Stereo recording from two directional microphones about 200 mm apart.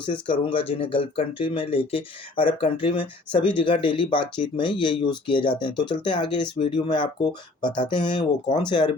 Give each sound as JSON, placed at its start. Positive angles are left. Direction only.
{"t": 0.0, "sound": "speech", "side_deg": 25}